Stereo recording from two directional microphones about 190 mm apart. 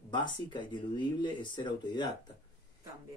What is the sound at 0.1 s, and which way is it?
Speech, 25° left (ahead or behind).